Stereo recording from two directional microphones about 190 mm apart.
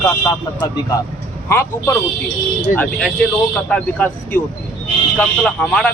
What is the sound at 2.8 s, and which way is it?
A man's voice, centre (ahead or behind).